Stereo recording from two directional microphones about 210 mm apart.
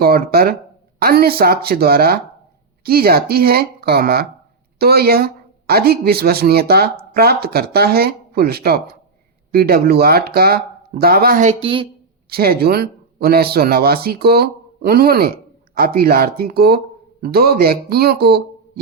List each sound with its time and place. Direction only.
0.0 s speech: 45° right (ahead or behind); by 11.9 s 25° right (ahead or behind)
12.3 s speech: 45° right (ahead or behind)